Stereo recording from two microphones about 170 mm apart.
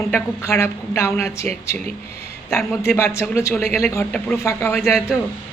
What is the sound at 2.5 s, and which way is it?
Speech, 15° left (ahead or behind).